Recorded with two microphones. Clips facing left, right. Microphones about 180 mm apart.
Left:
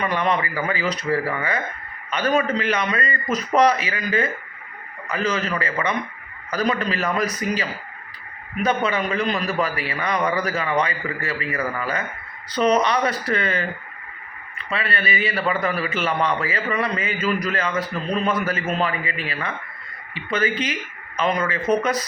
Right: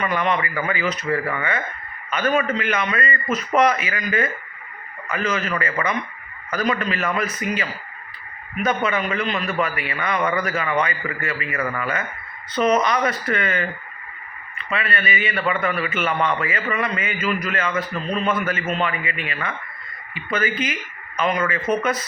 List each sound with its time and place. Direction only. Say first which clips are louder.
0.0 s a man's voice: even; 35° left (ahead or behind)
14.7 s a man's voice: even; 30° left (ahead or behind)